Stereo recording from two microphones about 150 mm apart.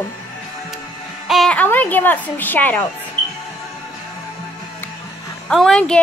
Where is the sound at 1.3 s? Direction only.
5° left (ahead or behind).